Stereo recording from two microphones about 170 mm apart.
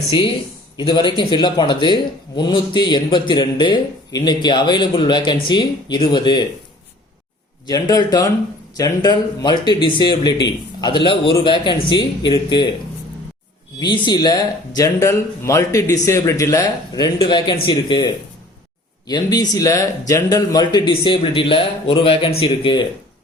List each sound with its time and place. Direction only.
0.8 s a man's voice: 25° left (ahead or behind)
7.7 s a man's voice: 25° left (ahead or behind)
13.7 s a man's voice: 25° left (ahead or behind)